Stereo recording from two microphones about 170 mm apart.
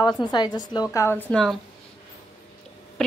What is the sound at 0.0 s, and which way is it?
A woman's voice, 25° left (ahead or behind).